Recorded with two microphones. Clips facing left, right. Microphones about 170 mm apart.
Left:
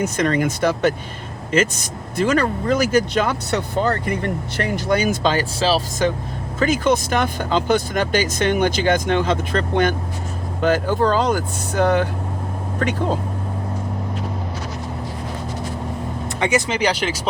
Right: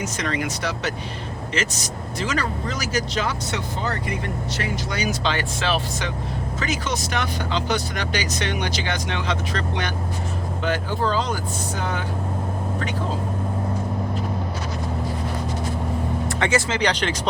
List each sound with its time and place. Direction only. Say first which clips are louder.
0.0 s speech: left 7 dB; 50° left (ahead or behind)
6.6 s speech: left 10 dB; 55° left (ahead or behind)
16.4 s speech: left 3 dB; 15° left (ahead or behind)